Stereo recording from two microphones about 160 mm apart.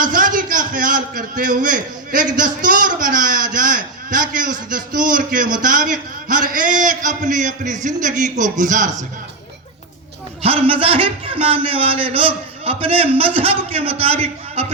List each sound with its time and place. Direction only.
0.0 s a man's voice: 60° right (ahead or behind)
10.4 s a man's voice: 35° right (ahead or behind)